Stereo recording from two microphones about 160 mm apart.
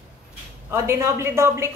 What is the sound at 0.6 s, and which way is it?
Speech, 15° right (ahead or behind).